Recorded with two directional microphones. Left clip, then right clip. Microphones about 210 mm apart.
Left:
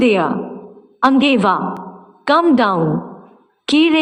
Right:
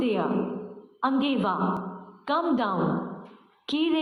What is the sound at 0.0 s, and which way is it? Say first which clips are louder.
A woman's voice: left 11 dB; 55° left (ahead or behind).